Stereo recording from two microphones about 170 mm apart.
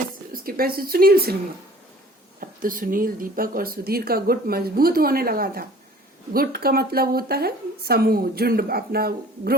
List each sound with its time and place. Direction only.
0.3 s speech: 60° right (ahead or behind)
2.4 s speech: 55° right (ahead or behind)